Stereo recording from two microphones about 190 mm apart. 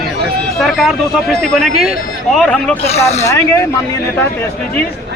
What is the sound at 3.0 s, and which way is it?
Speech, 35° left (ahead or behind).